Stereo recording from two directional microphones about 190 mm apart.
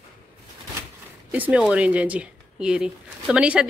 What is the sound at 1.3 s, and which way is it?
Speech, 5° right (ahead or behind).